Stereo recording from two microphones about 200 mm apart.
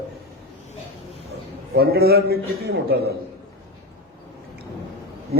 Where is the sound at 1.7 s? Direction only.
50° right (ahead or behind).